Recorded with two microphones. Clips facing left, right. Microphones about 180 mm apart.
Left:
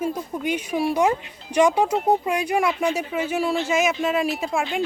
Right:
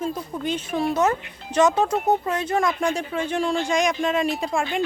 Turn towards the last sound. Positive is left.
turn(degrees=0)  # may be behind; listen again after turning